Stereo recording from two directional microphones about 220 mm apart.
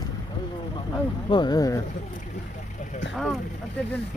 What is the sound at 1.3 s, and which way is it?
Speech, 20° left (ahead or behind).